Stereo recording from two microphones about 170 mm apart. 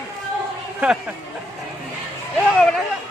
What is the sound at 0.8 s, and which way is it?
Speech, 5° right (ahead or behind).